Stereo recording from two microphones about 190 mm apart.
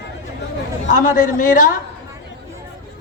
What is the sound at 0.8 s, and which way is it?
Speech, 40° left (ahead or behind).